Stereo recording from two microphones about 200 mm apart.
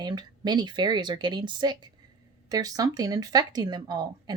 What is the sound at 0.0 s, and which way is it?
Speech, 20° right (ahead or behind).